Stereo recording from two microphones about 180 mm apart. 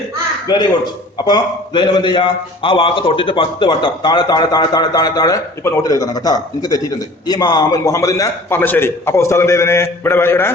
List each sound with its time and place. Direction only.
0.4 s a man's voice: 25° left (ahead or behind)